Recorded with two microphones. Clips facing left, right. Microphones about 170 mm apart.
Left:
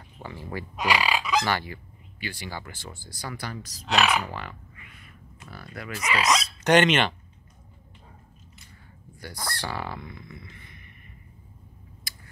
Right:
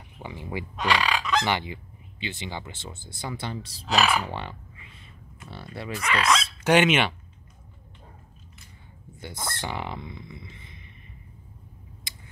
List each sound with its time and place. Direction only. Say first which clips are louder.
0.2 s speech: right 1 dB; 15° right (ahead or behind)
0.7 s fowl: even; 10° left (ahead or behind)
1.4 s speech: right 1 dB; 20° right (ahead or behind)
3.8 s speech: even; centre (ahead or behind)
4.3 s a sound: right 2 dB; 30° right (ahead or behind)
5.9 s speech: even; 5° left (ahead or behind)
6.6 s speech: left 1 dB; 5° right (ahead or behind)
9.1 s speech: even; 20° right (ahead or behind)